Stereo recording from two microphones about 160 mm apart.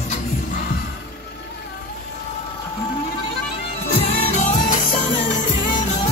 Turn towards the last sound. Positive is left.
turn(degrees=55)  # may be behind; listen again after turning